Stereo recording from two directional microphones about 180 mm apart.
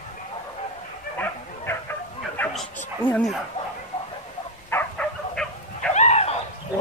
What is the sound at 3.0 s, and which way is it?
Speech, 10° left (ahead or behind).